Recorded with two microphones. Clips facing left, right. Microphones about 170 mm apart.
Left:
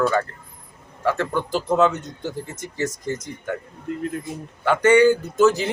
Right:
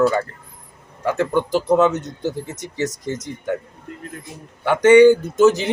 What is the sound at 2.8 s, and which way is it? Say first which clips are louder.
Speech: right 1 dB; 10° left (ahead or behind).